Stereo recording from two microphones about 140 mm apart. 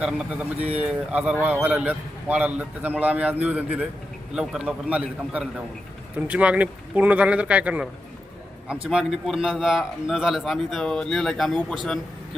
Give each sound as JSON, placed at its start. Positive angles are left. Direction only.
{"t": 0.0, "sound": "a man's voice", "side_deg": -5}